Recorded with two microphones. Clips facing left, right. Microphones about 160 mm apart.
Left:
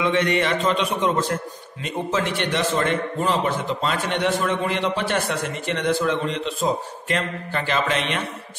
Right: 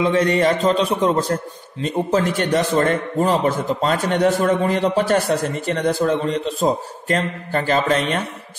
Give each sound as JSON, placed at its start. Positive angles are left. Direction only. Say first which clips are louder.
{"t": 0.0, "sound": "a man's voice", "louder": "right 4 dB", "side_deg": -35}